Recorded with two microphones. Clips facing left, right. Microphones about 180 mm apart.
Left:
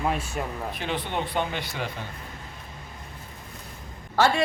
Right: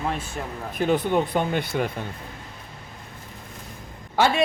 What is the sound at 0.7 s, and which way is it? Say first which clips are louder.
Speech: right 11 dB; 45° right (ahead or behind).